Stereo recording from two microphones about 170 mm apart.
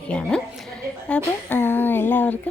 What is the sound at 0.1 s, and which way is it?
A woman's voice, 5° left (ahead or behind).